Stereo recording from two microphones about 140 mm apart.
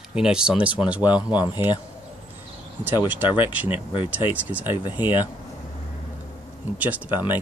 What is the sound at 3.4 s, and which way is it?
Speech, 10° right (ahead or behind).